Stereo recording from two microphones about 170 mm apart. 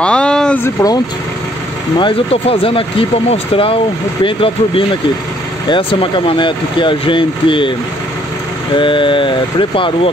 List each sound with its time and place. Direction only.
0.0 s a sound: 5° left (ahead or behind)
2.0 s speech: 30° left (ahead or behind)
8.7 s speech: 30° left (ahead or behind)